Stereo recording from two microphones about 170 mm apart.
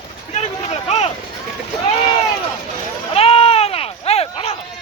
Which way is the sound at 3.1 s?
35° left (ahead or behind).